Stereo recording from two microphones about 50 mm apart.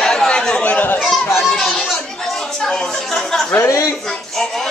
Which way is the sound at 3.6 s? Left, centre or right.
Left.